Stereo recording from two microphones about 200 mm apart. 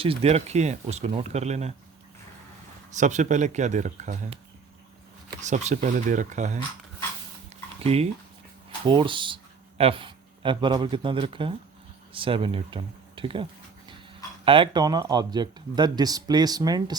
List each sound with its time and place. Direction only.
0.0 s speech: 30° right (ahead or behind)
2.9 s speech: 35° right (ahead or behind)
5.4 s speech: 35° right (ahead or behind)
7.9 s speech: 30° right (ahead or behind)